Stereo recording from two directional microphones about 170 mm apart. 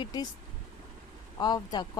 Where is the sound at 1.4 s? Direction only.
25° left (ahead or behind).